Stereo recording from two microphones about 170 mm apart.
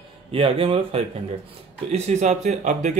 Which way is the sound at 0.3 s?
35° right (ahead or behind).